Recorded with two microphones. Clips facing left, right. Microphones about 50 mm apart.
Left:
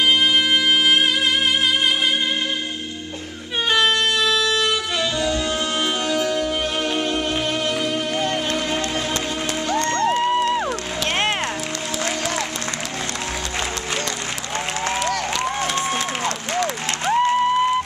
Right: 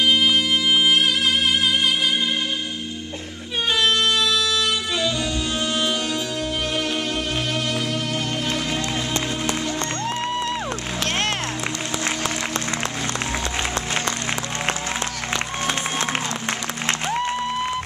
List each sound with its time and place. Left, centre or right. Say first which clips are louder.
0.2 s music: left 2 dB; left
3.8 s music: right 2 dB; left
9.7 s music: left 6 dB; left
10.0 s music: left 7 dB; centre
17.3 s a sound: left 7 dB; left